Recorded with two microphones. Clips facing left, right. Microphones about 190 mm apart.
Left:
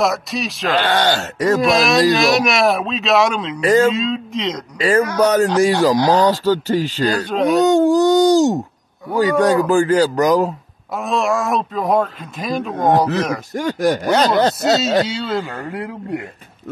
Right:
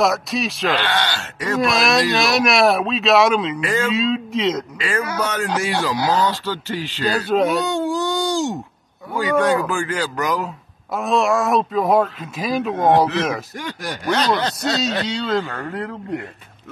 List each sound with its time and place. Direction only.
0.0 s speech: centre (ahead or behind)
0.7 s chopping: 45° left (ahead or behind)
1.6 s speech: centre (ahead or behind)
3.6 s speech: 40° left (ahead or behind)
3.9 s speech: centre (ahead or behind)
4.7 s speech: 40° left (ahead or behind)
7.2 s speech: 5° right (ahead or behind)
7.5 s speech: 45° left (ahead or behind)
10.9 s speech: centre (ahead or behind)
13.6 s chopping: 45° left (ahead or behind)
15.0 s speech: 5° left (ahead or behind)